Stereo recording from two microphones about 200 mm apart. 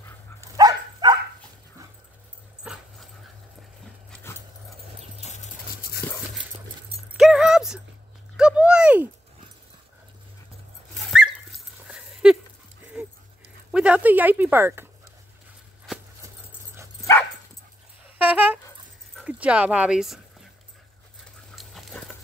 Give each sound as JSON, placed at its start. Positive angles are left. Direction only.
{"t": 0.4, "sound": "dog", "side_deg": -20}
{"t": 2.6, "sound": "dog", "side_deg": -5}
{"t": 5.2, "sound": "a sound", "side_deg": 35}
{"t": 7.2, "sound": "keys jangling", "side_deg": 0}
{"t": 8.4, "sound": "a sound", "side_deg": -5}
{"t": 11.0, "sound": "dog", "side_deg": 0}
{"t": 11.9, "sound": "a sound", "side_deg": -5}
{"t": 13.7, "sound": "speech", "side_deg": -5}
{"t": 15.9, "sound": "a sound", "side_deg": 0}
{"t": 18.1, "sound": "dog", "side_deg": -5}
{"t": 19.1, "sound": "speech", "side_deg": -5}
{"t": 21.5, "sound": "dog", "side_deg": 0}